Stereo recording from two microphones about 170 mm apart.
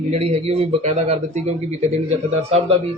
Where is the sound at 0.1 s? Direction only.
40° right (ahead or behind).